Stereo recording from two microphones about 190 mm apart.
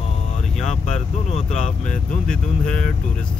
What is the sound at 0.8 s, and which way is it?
Speech, 40° left (ahead or behind).